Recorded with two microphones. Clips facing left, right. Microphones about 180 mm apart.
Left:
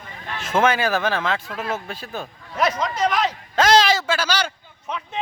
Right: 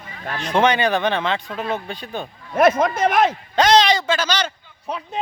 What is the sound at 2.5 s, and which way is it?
Speech, 50° right (ahead or behind).